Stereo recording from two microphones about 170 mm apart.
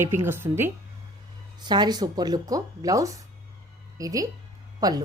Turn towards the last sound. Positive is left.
turn(degrees=-20)  # may be behind; listen again after turning